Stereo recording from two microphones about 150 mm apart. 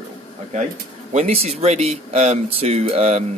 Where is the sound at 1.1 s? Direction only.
45° right (ahead or behind).